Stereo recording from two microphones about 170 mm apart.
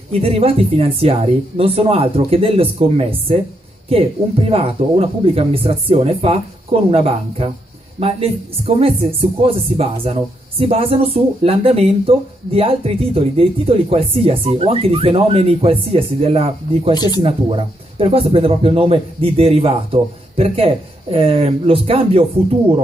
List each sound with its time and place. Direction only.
0.2 s speech: 35° right (ahead or behind)
4.5 s speech: 35° right (ahead or behind)
16.9 s speech: 25° left (ahead or behind)
17.2 s speech: 30° right (ahead or behind)